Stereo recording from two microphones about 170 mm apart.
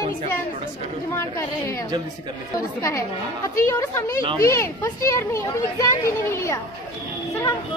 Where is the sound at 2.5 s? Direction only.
20° left (ahead or behind).